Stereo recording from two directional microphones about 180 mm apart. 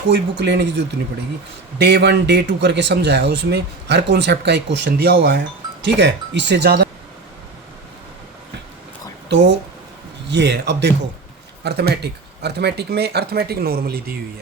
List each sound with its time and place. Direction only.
0.1 s speech: 70° right (ahead or behind)
1.8 s speech: 70° right (ahead or behind)
4.9 s speech: 65° right (ahead or behind)
10.2 s speech: 75° right (ahead or behind); by 14.0 s 55° right (ahead or behind)